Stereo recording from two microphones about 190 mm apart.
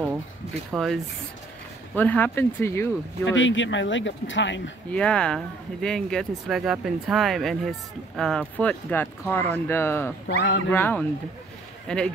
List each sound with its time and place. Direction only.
0.7 s speech: centre (ahead or behind)
2.0 s speech: 10° left (ahead or behind)
3.3 s speech: 80° left
4.9 s speech: 5° left (ahead or behind)
10.2 s speech: 70° left (ahead or behind)
10.7 s speech: 10° left (ahead or behind)